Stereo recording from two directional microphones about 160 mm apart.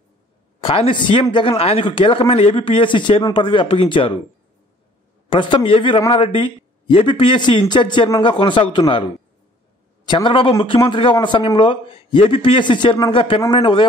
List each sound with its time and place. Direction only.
0.6 s a man's voice: 35° left (ahead or behind)
5.3 s a man's voice: 30° left (ahead or behind)